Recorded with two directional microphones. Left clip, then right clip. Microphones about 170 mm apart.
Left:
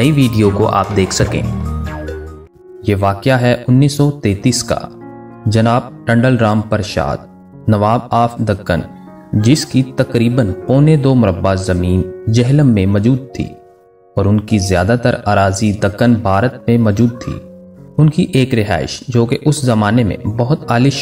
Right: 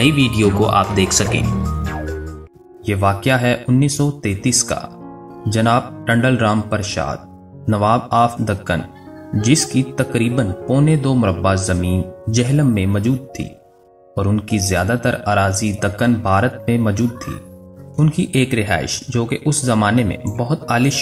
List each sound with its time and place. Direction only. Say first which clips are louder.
0.0 s speech: left 2 dB; 40° left (ahead or behind)
1.4 s music: even; centre (ahead or behind)
2.8 s speech: left 3 dB; 35° left (ahead or behind)